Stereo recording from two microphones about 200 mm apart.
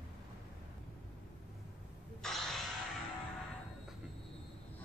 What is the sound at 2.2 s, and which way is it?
Crow, centre (ahead or behind).